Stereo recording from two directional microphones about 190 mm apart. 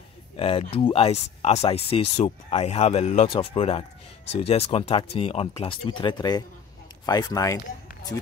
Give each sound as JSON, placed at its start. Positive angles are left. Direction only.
{"t": 0.4, "sound": "speech", "side_deg": 30}